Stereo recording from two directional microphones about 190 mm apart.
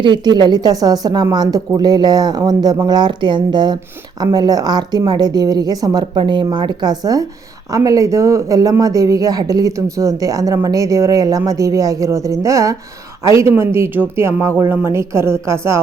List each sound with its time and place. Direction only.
0.0 s a woman's voice: 25° right (ahead or behind)